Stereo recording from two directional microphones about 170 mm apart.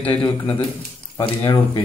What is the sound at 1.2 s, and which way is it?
Speech, 25° left (ahead or behind).